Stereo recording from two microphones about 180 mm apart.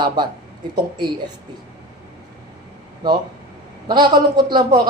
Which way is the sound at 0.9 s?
25° right (ahead or behind).